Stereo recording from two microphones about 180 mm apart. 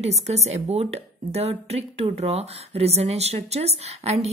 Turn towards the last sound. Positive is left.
turn(degrees=-35)  # may be behind; listen again after turning